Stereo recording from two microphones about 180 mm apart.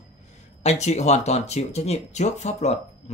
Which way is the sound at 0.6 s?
40° left (ahead or behind).